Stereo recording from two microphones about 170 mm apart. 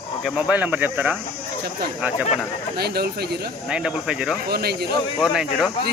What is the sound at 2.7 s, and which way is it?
Speech, 65° right (ahead or behind).